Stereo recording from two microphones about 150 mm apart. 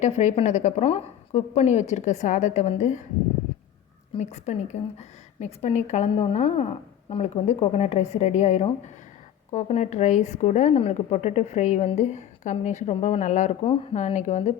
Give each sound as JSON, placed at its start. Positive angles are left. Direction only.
{"t": 0.0, "sound": "a woman's voice", "side_deg": 50}
{"t": 4.2, "sound": "a woman's voice", "side_deg": 50}